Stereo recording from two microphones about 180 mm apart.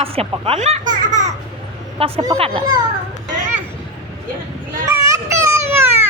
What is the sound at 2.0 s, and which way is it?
Speech, 30° right (ahead or behind).